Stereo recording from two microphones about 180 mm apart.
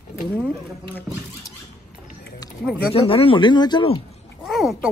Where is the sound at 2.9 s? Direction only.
30° left (ahead or behind).